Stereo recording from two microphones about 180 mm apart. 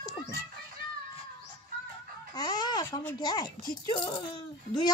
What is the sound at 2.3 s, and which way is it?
A child's voice, 20° left (ahead or behind).